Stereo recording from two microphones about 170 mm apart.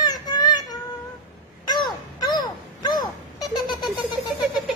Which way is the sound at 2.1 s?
25° left (ahead or behind).